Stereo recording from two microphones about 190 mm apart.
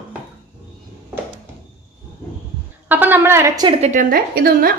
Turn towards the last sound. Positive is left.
turn(degrees=-50)  # may be behind; listen again after turning